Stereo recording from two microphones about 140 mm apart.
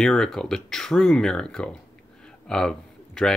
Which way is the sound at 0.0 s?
5° left (ahead or behind).